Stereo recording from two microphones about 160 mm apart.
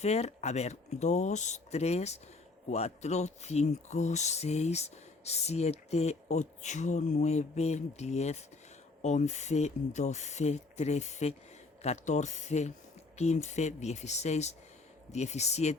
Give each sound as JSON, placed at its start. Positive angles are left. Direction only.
{"t": 0.0, "sound": "speech", "side_deg": 45}